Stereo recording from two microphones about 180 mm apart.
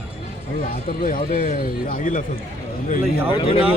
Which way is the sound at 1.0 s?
50° left (ahead or behind).